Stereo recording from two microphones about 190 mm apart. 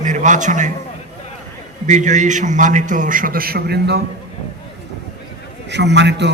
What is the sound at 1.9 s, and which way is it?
A man's voice, 40° right (ahead or behind).